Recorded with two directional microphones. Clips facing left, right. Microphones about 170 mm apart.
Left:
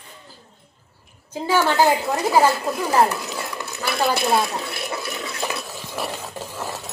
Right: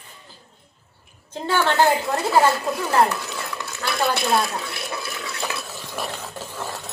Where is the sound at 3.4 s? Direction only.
10° left (ahead or behind).